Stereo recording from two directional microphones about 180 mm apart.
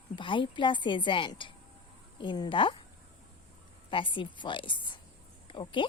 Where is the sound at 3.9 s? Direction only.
30° left (ahead or behind).